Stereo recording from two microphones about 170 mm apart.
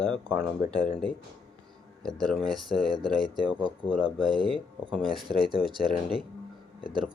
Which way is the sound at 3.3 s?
30° right (ahead or behind).